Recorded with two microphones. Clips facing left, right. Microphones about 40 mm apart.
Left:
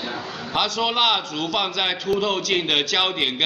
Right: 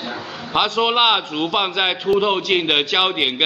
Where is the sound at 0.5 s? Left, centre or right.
Right.